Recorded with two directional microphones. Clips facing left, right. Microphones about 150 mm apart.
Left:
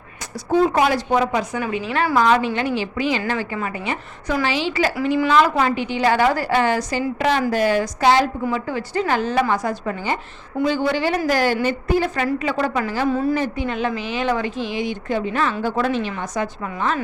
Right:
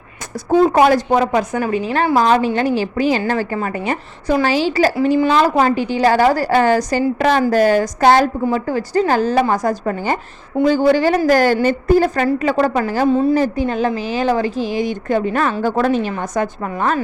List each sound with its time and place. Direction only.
0.6 s a woman's voice: 45° right (ahead or behind)